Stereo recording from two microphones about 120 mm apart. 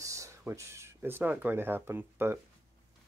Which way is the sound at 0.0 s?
25° right (ahead or behind).